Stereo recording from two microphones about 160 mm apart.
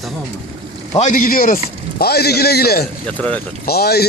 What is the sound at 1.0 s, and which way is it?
A man's voice, 55° left (ahead or behind).